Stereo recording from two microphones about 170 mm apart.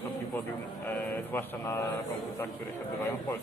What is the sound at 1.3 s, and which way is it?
Speech, 15° left (ahead or behind).